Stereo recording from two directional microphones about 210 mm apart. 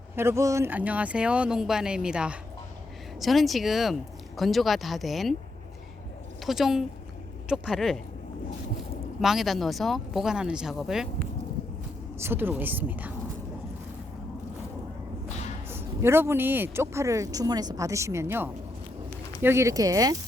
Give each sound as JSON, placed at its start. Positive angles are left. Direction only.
{"t": 0.2, "sound": "speech", "side_deg": -10}
{"t": 6.4, "sound": "a woman's voice", "side_deg": 0}
{"t": 9.2, "sound": "speech", "side_deg": 0}
{"t": 12.2, "sound": "speech", "side_deg": -10}
{"t": 15.7, "sound": "speech", "side_deg": -10}